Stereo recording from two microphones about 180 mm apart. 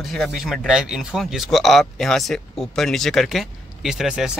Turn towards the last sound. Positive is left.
turn(degrees=-5)  # may be behind; listen again after turning